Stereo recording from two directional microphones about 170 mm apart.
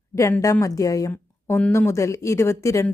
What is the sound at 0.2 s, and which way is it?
A woman's voice, 15° left (ahead or behind).